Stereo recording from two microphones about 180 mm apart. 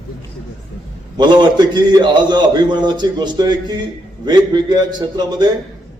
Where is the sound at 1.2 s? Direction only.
25° right (ahead or behind).